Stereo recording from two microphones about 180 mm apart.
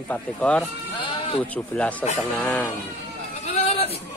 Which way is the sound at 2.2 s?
5° left (ahead or behind).